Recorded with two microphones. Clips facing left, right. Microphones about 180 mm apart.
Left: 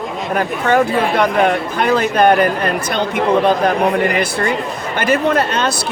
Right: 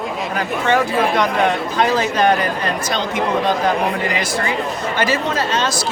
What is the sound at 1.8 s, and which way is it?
Speech, 55° left (ahead or behind).